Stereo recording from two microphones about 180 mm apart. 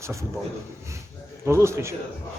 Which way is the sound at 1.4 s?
15° right (ahead or behind).